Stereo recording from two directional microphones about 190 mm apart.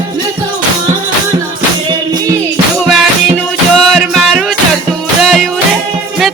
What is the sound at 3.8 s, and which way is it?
Music, centre (ahead or behind).